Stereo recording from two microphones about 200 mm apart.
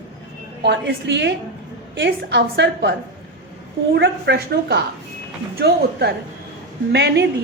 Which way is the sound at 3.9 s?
55° right (ahead or behind).